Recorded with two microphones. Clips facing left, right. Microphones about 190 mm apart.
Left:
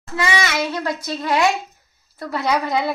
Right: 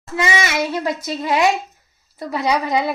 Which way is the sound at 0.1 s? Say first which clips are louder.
Right 1 dB; 25° right (ahead or behind).